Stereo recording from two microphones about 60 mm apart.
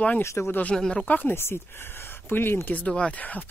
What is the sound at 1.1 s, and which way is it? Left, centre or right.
Speech, left.